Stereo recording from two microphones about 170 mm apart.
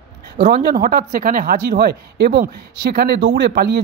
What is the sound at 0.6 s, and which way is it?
Speech, 60° right (ahead or behind).